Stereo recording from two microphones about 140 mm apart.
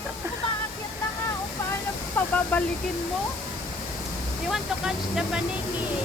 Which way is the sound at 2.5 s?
10° left (ahead or behind).